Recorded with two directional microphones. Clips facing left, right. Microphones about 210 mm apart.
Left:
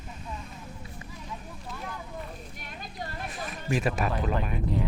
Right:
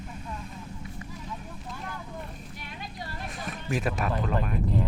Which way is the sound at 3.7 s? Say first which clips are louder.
Left 1 dB; centre (ahead or behind).